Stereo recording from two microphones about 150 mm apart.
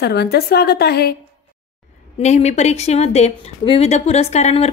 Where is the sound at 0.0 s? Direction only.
90° left.